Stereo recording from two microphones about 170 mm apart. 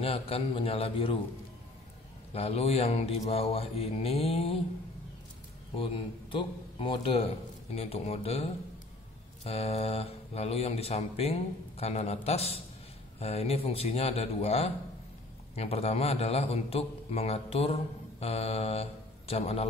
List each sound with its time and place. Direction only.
0.0 s speech: 35° left (ahead or behind)
2.3 s speech: 35° left (ahead or behind)
5.8 s a man's voice: 30° left (ahead or behind)